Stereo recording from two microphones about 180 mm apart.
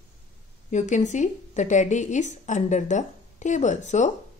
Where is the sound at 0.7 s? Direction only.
40° left (ahead or behind).